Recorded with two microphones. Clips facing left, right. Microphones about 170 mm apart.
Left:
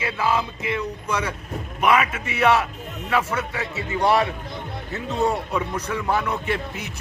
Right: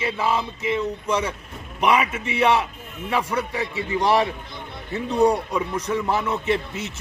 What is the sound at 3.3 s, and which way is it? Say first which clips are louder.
Speech: right 2 dB; 30° right (ahead or behind).